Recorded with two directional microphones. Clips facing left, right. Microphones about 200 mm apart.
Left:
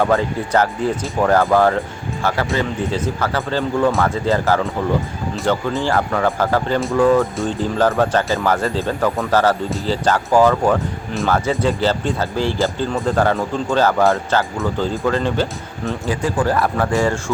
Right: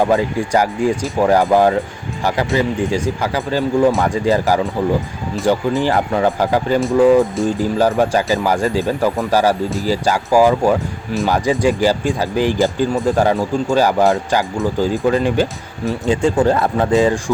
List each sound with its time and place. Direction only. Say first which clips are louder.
0.0 s speech: right 2 dB; 15° right (ahead or behind)
9.6 s speech: right 3 dB; centre (ahead or behind)
9.9 s speech: right 1 dB; 10° right (ahead or behind)
16.0 s speech: right 5 dB; 25° right (ahead or behind)